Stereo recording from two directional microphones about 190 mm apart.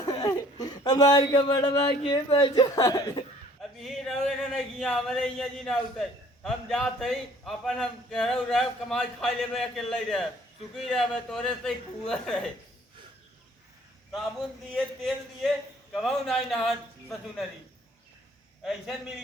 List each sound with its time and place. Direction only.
0.0 s speech: 15° left (ahead or behind)
3.8 s speech: centre (ahead or behind)
14.8 s speech: centre (ahead or behind)
18.6 s speech: centre (ahead or behind)